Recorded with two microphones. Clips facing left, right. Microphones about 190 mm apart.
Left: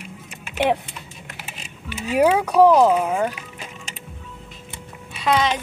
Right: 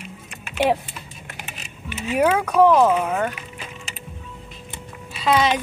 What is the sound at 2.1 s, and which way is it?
Speech, 15° left (ahead or behind).